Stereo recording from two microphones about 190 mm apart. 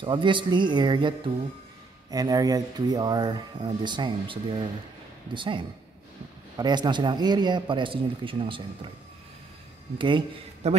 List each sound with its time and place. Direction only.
0.0 s speech: 25° right (ahead or behind)
9.9 s speech: 25° right (ahead or behind)